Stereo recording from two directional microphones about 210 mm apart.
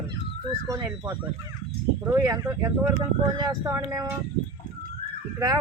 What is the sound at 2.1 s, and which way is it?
Speech, 15° right (ahead or behind).